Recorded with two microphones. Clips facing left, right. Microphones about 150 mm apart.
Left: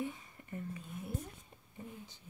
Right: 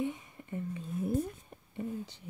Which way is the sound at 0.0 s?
20° right (ahead or behind).